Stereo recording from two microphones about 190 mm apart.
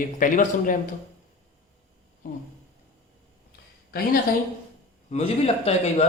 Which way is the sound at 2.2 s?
45° left (ahead or behind).